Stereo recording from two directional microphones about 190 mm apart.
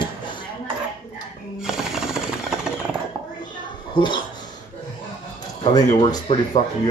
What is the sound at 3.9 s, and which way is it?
Speech, 25° left (ahead or behind).